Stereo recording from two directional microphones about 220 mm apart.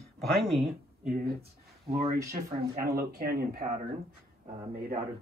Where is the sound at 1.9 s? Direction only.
15° right (ahead or behind).